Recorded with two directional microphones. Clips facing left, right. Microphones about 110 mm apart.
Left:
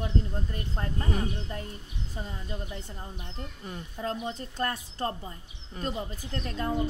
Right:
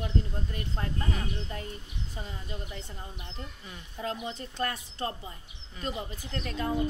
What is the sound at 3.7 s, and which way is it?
Speech, 40° left (ahead or behind).